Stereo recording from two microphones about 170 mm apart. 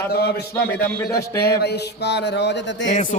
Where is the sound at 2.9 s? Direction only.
45° left (ahead or behind).